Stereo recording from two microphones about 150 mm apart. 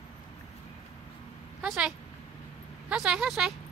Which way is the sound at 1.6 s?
5° right (ahead or behind).